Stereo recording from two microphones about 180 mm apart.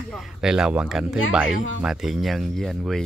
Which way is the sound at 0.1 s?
5° right (ahead or behind).